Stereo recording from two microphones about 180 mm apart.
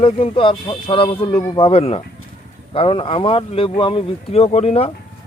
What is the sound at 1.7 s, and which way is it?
Speech, 35° left (ahead or behind).